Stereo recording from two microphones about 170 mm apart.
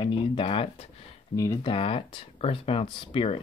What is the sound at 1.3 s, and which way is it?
Speech, 20° left (ahead or behind).